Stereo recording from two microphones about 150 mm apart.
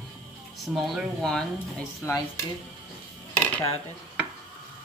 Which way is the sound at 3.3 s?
10° left (ahead or behind).